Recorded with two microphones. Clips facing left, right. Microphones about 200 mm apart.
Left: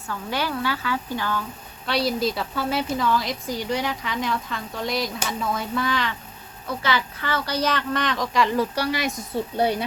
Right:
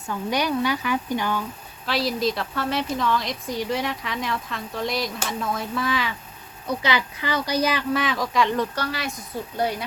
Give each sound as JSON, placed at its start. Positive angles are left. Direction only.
{"t": 0.1, "sound": "speech", "side_deg": -15}
{"t": 1.9, "sound": "a woman's voice", "side_deg": 0}
{"t": 6.7, "sound": "speech", "side_deg": -15}
{"t": 8.7, "sound": "speech", "side_deg": 15}